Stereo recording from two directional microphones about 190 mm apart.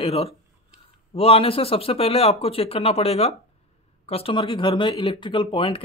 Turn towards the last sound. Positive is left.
turn(degrees=30)  # may be behind; listen again after turning